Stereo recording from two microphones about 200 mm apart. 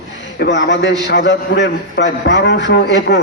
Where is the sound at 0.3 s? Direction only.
60° left (ahead or behind).